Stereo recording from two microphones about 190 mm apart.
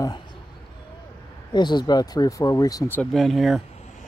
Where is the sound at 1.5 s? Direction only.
25° left (ahead or behind).